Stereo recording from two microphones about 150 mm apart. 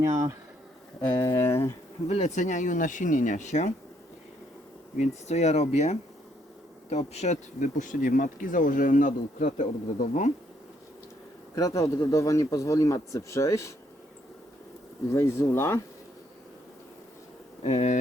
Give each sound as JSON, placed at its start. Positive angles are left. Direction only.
{"t": 0.0, "sound": "speech", "side_deg": -20}
{"t": 1.0, "sound": "a man's voice", "side_deg": 30}
{"t": 1.4, "sound": "speech", "side_deg": 15}
{"t": 2.0, "sound": "speech", "side_deg": 50}
{"t": 4.9, "sound": "speech", "side_deg": 50}
{"t": 11.5, "sound": "a man's voice", "side_deg": 20}
{"t": 15.1, "sound": "speech", "side_deg": 15}
{"t": 17.6, "sound": "speech", "side_deg": 45}